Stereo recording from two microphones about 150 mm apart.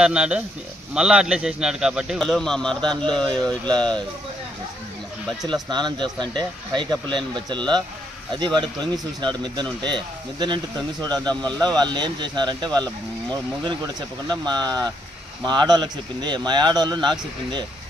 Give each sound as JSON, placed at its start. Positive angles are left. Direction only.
{"t": 0.0, "sound": "speech", "side_deg": -5}
{"t": 5.4, "sound": "speech", "side_deg": -30}